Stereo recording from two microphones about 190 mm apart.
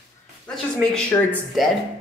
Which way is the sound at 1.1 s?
20° left (ahead or behind).